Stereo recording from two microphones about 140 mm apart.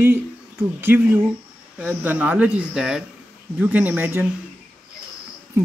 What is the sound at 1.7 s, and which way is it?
Speech, 10° right (ahead or behind).